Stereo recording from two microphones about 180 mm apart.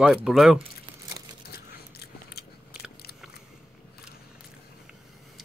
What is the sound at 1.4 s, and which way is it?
Biting, 60° left (ahead or behind).